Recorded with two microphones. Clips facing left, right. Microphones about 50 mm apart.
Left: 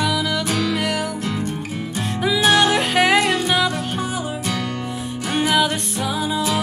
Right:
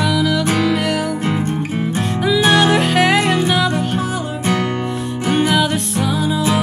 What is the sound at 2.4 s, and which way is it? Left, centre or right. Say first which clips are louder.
Music: right 2 dB; centre.